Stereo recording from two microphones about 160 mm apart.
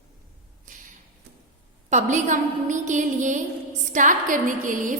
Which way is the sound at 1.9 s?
50° right (ahead or behind).